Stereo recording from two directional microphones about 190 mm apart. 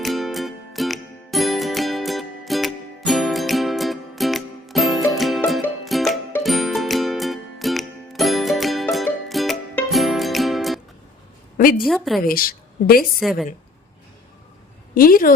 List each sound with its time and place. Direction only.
0.0 s music: centre (ahead or behind)
11.5 s a sound: 50° left (ahead or behind)
11.9 s a woman's voice: centre (ahead or behind)
12.2 s a woman's voice: 50° left (ahead or behind)
13.1 s a woman's voice: centre (ahead or behind)
14.9 s a woman's voice: 50° left (ahead or behind)